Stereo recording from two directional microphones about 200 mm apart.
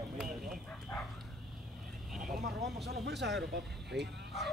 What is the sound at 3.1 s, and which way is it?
A man's voice, 60° right (ahead or behind).